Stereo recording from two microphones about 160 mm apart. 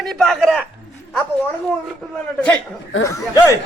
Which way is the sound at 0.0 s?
Centre (ahead or behind).